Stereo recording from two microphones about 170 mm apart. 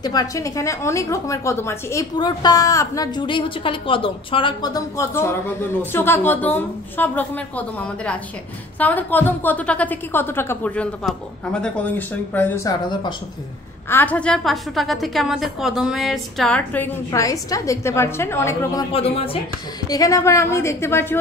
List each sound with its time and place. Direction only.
0.0 s a woman's voice: 20° left (ahead or behind)
13.8 s a woman's voice: 10° left (ahead or behind)
18.9 s speech: 35° left (ahead or behind)
19.9 s a woman's voice: 20° left (ahead or behind)